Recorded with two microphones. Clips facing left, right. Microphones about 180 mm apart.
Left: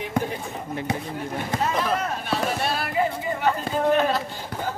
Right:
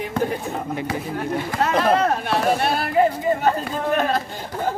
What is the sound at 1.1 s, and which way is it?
Speech, 70° right (ahead or behind).